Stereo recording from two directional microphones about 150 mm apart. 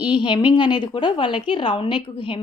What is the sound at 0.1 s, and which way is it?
Speech, 30° left (ahead or behind).